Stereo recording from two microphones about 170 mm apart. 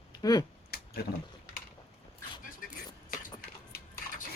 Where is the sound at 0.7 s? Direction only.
65° left (ahead or behind).